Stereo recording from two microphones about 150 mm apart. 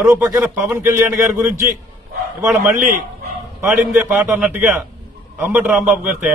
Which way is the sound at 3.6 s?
10° right (ahead or behind).